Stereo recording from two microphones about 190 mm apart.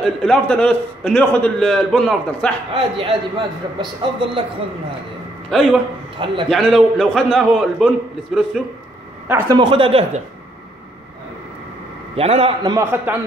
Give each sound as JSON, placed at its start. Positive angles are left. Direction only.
{"t": 0.0, "sound": "a man's voice", "side_deg": 5}
{"t": 2.7, "sound": "a man's voice", "side_deg": -25}
{"t": 5.5, "sound": "a man's voice", "side_deg": 0}
{"t": 6.1, "sound": "a man's voice", "side_deg": -25}
{"t": 6.5, "sound": "a man's voice", "side_deg": 0}
{"t": 9.3, "sound": "a man's voice", "side_deg": -20}
{"t": 12.2, "sound": "a man's voice", "side_deg": -30}